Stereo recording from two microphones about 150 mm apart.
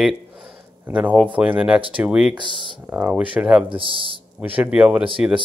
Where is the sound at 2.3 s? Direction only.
30° right (ahead or behind).